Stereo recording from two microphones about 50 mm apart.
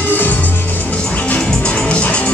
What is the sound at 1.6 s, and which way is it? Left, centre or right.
Music, left.